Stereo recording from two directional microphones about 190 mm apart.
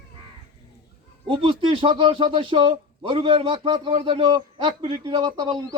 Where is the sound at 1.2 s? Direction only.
25° right (ahead or behind).